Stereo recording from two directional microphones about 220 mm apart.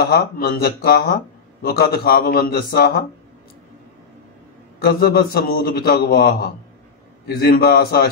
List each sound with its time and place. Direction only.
0.0 s a man's voice: 45° left (ahead or behind)
4.8 s a man's voice: 45° left (ahead or behind)